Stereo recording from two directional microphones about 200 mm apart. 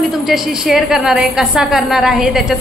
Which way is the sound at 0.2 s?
Centre (ahead or behind).